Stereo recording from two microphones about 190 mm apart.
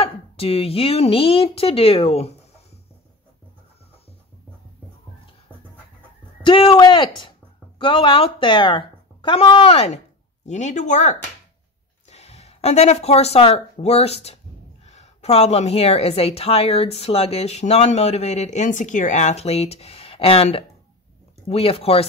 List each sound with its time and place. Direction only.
0.0 s a woman's voice: 30° left (ahead or behind)
6.4 s a woman's voice: 25° left (ahead or behind)